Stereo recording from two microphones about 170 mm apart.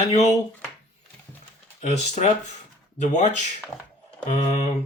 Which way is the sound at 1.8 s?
40° left (ahead or behind).